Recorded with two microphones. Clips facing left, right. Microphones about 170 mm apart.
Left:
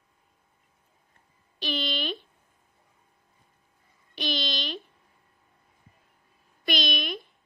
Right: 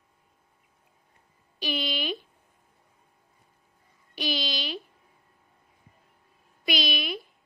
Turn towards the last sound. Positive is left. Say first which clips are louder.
# even
turn(degrees=-5)  # may be behind; listen again after turning